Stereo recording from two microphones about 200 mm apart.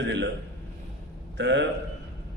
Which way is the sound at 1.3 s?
60° right (ahead or behind).